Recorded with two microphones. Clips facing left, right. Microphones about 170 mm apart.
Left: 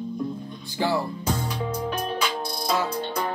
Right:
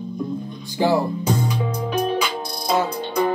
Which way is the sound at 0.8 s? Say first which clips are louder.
Right 6 dB; 15° right (ahead or behind).